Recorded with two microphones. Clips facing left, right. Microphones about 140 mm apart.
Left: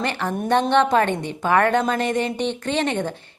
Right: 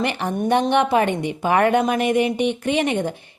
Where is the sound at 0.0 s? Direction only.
15° right (ahead or behind).